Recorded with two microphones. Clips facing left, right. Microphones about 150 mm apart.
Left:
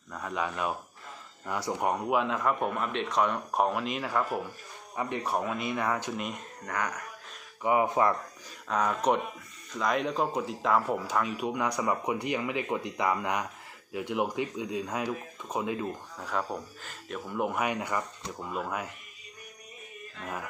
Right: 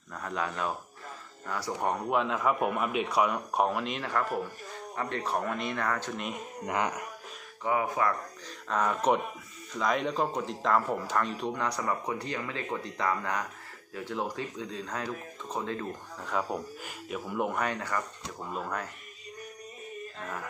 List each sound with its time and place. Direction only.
0.1 s speech: 5° left (ahead or behind)
6.1 s speech: centre (ahead or behind)
6.6 s speech: 25° right (ahead or behind)
7.6 s speech: 20° left (ahead or behind)
8.6 s speech: centre (ahead or behind)
16.3 s speech: 5° right (ahead or behind)
17.6 s speech: 15° left (ahead or behind)